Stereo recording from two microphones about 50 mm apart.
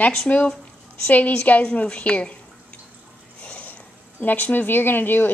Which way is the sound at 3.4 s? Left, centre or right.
Left.